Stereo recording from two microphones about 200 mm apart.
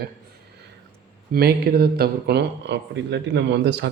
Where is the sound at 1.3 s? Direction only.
50° right (ahead or behind).